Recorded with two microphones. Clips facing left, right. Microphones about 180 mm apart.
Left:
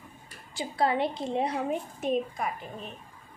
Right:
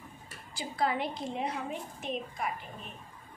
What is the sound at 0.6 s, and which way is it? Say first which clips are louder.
Speech: left 5 dB; 25° left (ahead or behind).